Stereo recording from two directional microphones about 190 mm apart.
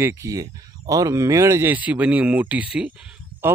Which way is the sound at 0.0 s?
15° right (ahead or behind).